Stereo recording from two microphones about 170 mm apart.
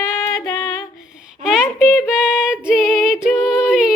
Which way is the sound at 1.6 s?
15° left (ahead or behind).